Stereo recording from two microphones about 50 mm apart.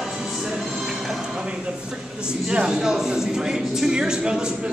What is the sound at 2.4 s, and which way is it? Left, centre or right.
Music, centre.